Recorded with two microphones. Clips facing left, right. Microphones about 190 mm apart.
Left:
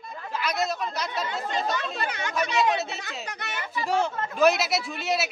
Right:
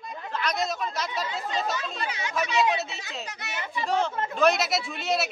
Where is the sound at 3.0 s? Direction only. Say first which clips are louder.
Left 1 dB; 55° left (ahead or behind).